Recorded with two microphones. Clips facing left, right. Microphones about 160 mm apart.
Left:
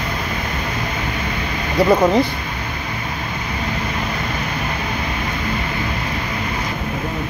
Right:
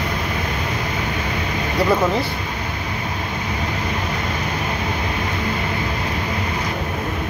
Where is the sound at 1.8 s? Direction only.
20° left (ahead or behind).